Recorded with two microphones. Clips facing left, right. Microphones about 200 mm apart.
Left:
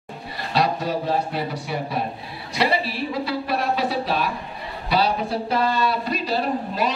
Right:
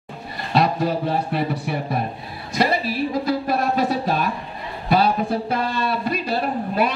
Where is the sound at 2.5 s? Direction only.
45° right (ahead or behind).